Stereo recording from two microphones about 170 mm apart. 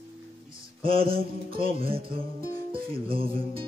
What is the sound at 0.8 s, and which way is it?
Speech, 30° right (ahead or behind).